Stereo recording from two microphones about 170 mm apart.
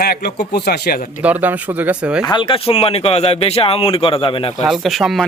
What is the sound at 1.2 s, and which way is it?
Speech, 10° right (ahead or behind).